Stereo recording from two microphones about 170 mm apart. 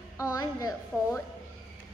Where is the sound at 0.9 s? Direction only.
5° left (ahead or behind).